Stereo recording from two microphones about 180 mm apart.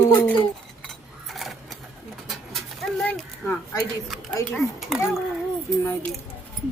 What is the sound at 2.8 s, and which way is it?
Dog, centre (ahead or behind).